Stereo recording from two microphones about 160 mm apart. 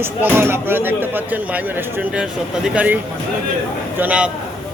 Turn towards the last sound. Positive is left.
turn(degrees=-10)  # may be behind; listen again after turning